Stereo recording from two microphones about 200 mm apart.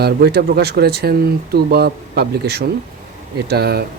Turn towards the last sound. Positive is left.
turn(degrees=-50)  # may be behind; listen again after turning